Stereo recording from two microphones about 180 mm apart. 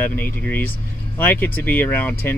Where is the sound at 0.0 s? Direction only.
10° left (ahead or behind).